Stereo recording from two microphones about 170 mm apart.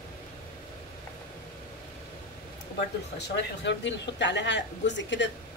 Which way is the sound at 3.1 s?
90° left.